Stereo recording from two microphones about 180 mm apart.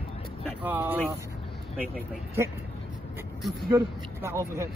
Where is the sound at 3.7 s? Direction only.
15° right (ahead or behind).